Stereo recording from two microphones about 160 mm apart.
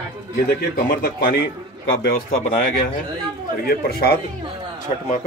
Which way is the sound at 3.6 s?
75° left (ahead or behind).